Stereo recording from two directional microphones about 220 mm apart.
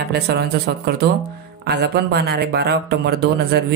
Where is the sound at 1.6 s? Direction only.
50° right (ahead or behind).